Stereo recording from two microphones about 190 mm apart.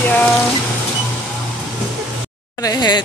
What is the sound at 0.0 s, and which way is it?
Music, 10° left (ahead or behind).